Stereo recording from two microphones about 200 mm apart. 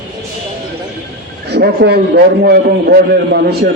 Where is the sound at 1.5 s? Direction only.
55° right (ahead or behind).